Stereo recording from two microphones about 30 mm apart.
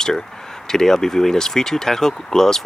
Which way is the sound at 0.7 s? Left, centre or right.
Centre.